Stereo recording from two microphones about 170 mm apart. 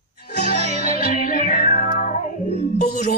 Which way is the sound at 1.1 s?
55° left (ahead or behind).